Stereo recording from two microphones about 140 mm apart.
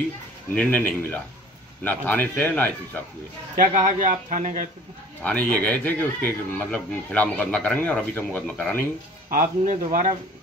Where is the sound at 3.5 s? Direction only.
65° right (ahead or behind).